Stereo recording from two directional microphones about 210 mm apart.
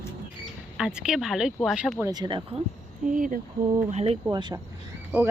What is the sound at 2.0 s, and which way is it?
Speech, 20° right (ahead or behind).